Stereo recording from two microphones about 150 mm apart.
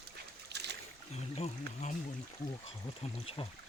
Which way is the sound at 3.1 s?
40° left (ahead or behind).